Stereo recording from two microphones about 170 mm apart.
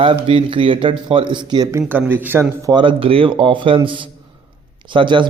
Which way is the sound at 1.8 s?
10° right (ahead or behind).